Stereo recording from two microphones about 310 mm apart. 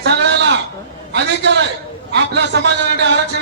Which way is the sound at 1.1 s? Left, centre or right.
Right.